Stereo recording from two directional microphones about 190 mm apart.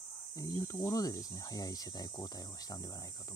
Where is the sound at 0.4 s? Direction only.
20° left (ahead or behind).